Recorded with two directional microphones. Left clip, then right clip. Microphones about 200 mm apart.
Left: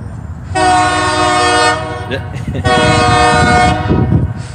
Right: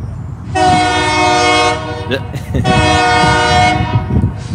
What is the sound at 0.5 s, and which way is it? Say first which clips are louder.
Train: even; 5° left (ahead or behind).